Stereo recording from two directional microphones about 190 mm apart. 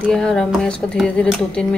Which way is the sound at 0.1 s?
5° left (ahead or behind).